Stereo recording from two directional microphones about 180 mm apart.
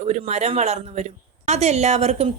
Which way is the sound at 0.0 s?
35° right (ahead or behind).